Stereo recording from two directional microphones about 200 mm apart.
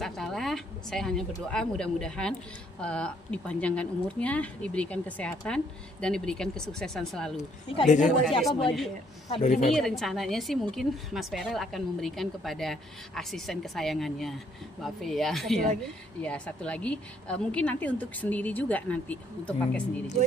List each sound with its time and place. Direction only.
0.0 s a woman's voice: centre (ahead or behind)
7.9 s speech: 35° left (ahead or behind)
8.4 s speech: centre (ahead or behind)
9.3 s speech: 35° left (ahead or behind)
9.8 s a woman's voice: centre (ahead or behind)